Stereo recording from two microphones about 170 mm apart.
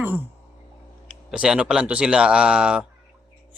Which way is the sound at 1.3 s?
5° right (ahead or behind).